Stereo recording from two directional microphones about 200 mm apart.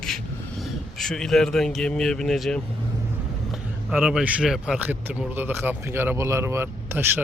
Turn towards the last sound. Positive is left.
turn(degrees=-10)  # may be behind; listen again after turning